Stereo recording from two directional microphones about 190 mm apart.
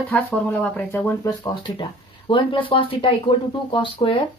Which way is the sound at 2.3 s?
25° left (ahead or behind).